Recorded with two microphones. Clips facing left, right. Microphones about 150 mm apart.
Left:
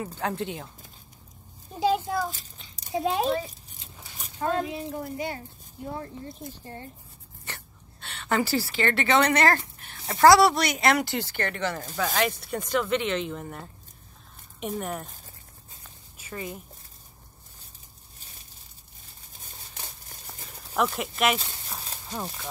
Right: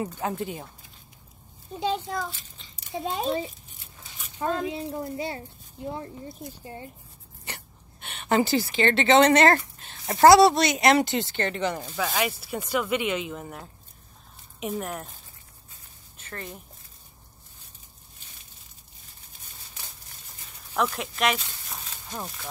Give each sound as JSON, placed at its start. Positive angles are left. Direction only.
{"t": 0.2, "sound": "a woman's voice", "side_deg": -5}
{"t": 1.8, "sound": "a child's voice", "side_deg": 5}
{"t": 2.2, "sound": "a child's voice", "side_deg": 40}
{"t": 2.9, "sound": "a woman's voice", "side_deg": 0}
{"t": 4.4, "sound": "a woman's voice", "side_deg": -25}
{"t": 6.6, "sound": "a woman's voice", "side_deg": -15}
{"t": 12.0, "sound": "a woman's voice", "side_deg": -5}
{"t": 16.2, "sound": "speech", "side_deg": 5}
{"t": 20.4, "sound": "speech", "side_deg": 0}